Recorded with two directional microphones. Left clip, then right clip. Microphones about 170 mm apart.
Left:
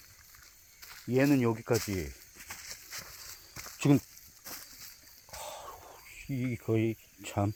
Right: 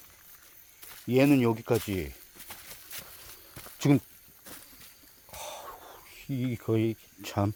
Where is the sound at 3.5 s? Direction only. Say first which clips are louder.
Right 1 dB; centre (ahead or behind).